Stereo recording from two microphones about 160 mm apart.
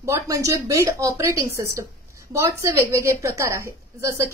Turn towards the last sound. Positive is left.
turn(degrees=-15)  # may be behind; listen again after turning